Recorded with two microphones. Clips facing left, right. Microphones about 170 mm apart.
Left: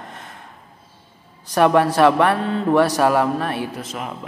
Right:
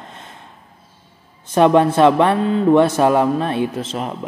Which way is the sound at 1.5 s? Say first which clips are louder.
Right 3 dB; 20° right (ahead or behind).